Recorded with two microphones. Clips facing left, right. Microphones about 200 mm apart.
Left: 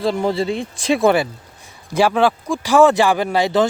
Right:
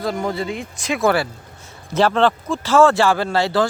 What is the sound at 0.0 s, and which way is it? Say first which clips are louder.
Speech: left 4 dB; 30° left (ahead or behind).